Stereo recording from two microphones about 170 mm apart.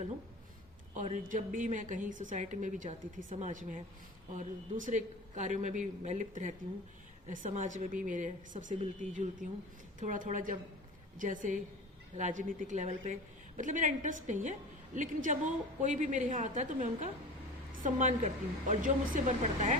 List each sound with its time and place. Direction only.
0.9 s a woman's voice: 50° right (ahead or behind)